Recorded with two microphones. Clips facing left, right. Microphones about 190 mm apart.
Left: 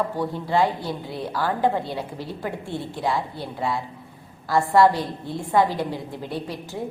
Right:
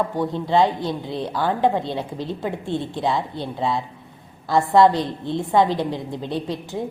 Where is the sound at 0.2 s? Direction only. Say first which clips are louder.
Right 4 dB; 20° right (ahead or behind).